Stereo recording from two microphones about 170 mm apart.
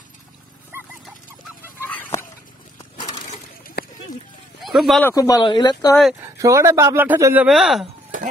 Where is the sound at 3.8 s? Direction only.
70° left (ahead or behind).